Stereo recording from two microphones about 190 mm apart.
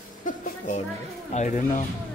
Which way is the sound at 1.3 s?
40° left (ahead or behind).